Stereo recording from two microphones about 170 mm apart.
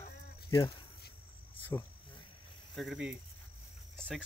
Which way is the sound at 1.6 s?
15° left (ahead or behind).